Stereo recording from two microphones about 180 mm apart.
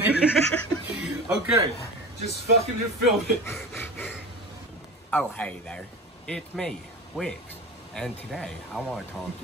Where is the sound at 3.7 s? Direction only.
10° left (ahead or behind).